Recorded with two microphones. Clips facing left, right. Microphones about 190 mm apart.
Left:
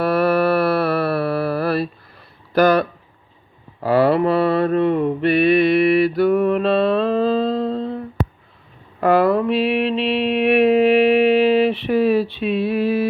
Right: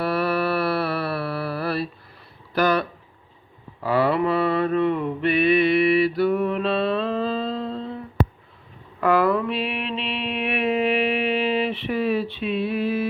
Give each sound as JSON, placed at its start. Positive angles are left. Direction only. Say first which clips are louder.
{"t": 0.0, "sound": "a sound", "louder": "left 6 dB", "side_deg": 45}
{"t": 2.5, "sound": "speech", "louder": "left 6 dB", "side_deg": 45}
{"t": 3.8, "sound": "mantra", "louder": "left 5 dB", "side_deg": 35}